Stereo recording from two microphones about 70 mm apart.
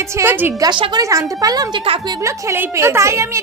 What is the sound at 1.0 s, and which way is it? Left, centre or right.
Speech, right.